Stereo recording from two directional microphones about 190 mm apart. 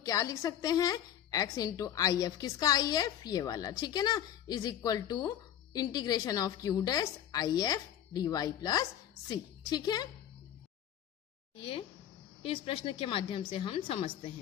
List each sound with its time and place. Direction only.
0.0 s a woman's voice: 20° left (ahead or behind)
12.4 s a woman's voice: 30° left (ahead or behind)